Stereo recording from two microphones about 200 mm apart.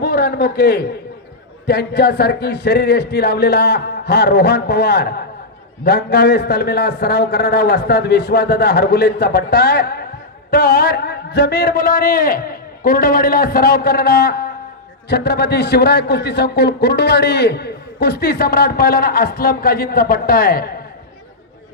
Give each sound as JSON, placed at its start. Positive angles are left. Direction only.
{"t": 0.0, "sound": "a man's voice", "side_deg": 45}